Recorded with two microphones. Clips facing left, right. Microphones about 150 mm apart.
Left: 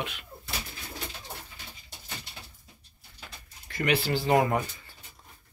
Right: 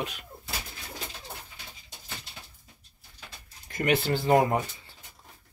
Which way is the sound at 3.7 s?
45° right (ahead or behind).